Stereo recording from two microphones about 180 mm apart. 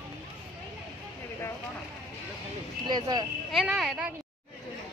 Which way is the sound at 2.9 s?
25° right (ahead or behind).